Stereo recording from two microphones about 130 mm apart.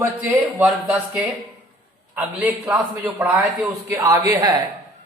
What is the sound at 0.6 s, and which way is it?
Speech, 5° right (ahead or behind).